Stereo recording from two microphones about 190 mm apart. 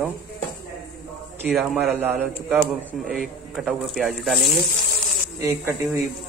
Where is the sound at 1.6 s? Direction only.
Centre (ahead or behind).